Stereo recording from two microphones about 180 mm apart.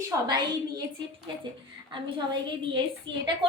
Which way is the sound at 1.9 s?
25° right (ahead or behind).